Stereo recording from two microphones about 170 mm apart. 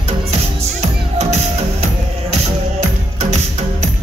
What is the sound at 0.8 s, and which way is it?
Music, 40° right (ahead or behind).